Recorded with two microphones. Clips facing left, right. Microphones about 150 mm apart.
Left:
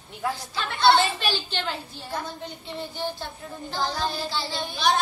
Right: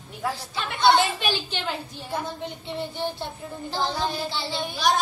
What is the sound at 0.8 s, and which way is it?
A woman's voice, 15° right (ahead or behind).